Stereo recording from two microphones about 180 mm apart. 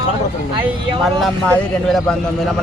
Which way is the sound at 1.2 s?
5° left (ahead or behind).